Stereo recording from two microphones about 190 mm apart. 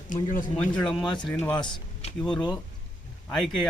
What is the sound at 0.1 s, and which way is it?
Speech, 45° left (ahead or behind).